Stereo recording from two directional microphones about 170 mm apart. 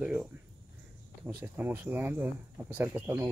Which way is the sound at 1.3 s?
10° right (ahead or behind).